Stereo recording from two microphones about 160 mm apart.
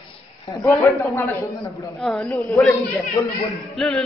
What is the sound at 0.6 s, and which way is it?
Speech, 20° left (ahead or behind).